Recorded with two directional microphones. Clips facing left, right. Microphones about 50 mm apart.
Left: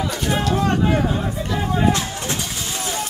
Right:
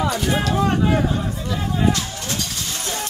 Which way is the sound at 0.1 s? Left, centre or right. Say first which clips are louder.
Even; centre.